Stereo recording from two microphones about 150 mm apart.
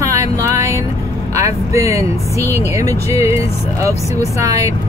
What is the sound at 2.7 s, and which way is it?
Speech, 20° right (ahead or behind).